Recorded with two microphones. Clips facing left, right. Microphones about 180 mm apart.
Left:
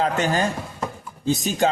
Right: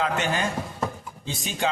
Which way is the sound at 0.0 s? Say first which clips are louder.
Left 4 dB; 40° left (ahead or behind).